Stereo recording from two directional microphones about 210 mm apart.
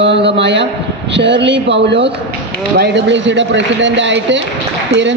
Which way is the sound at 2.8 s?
55° right (ahead or behind).